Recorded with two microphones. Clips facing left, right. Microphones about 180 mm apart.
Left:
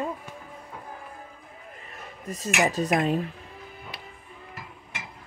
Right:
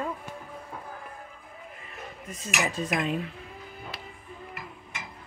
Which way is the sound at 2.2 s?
40° left (ahead or behind).